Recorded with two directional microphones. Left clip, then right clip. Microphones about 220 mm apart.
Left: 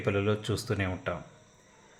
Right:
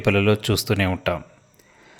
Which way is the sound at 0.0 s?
45° right (ahead or behind).